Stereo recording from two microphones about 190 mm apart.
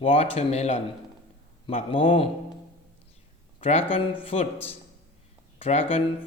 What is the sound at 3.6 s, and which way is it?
Speech, 30° left (ahead or behind).